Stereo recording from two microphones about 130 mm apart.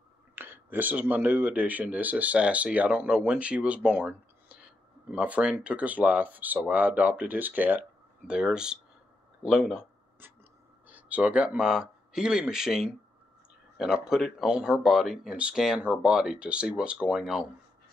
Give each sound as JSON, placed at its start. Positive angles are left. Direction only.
{"t": 0.4, "sound": "speech", "side_deg": -15}
{"t": 10.9, "sound": "speech", "side_deg": -10}